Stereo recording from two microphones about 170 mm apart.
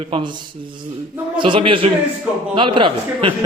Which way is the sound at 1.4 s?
30° right (ahead or behind).